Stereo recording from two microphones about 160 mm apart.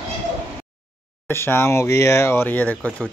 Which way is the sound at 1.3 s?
15° left (ahead or behind).